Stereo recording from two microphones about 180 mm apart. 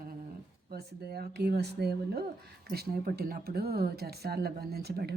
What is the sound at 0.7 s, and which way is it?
Speech, 60° right (ahead or behind).